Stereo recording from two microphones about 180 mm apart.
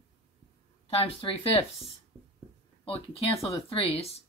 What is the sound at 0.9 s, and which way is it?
Speech, 30° left (ahead or behind).